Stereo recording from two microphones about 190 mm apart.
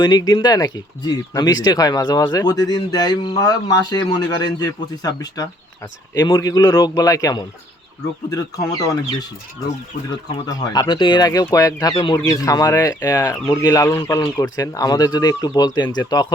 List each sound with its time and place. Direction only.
0.0 s speech: 20° left (ahead or behind)
10.4 s speech: 20° left (ahead or behind)